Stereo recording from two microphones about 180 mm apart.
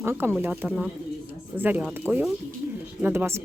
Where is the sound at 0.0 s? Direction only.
10° right (ahead or behind).